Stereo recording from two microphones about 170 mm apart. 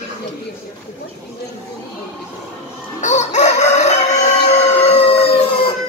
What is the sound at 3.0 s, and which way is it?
Chicken, 45° left (ahead or behind).